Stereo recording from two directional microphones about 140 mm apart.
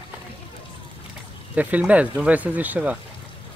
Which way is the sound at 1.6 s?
10° right (ahead or behind).